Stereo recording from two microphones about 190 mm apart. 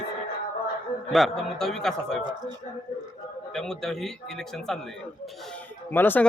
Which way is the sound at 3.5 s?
5° left (ahead or behind).